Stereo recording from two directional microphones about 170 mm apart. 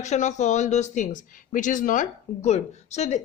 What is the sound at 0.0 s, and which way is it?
A woman's voice, 45° left (ahead or behind).